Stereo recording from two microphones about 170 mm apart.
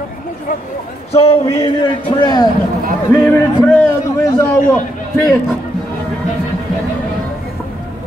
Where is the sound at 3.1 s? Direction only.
15° left (ahead or behind).